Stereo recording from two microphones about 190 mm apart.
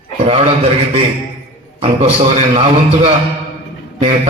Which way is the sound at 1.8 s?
30° right (ahead or behind).